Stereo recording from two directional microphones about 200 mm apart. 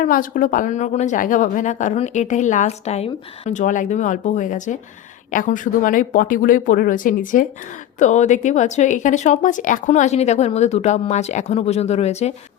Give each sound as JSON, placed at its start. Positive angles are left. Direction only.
{"t": 0.0, "sound": "a woman's voice", "side_deg": 45}